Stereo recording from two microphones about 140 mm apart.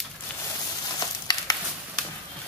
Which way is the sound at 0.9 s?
25° left (ahead or behind).